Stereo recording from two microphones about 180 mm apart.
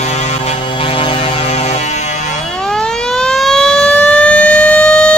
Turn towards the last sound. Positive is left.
turn(degrees=5)  # may be behind; listen again after turning